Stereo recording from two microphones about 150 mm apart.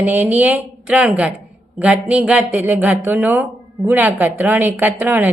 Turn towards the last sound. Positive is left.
turn(degrees=-10)  # may be behind; listen again after turning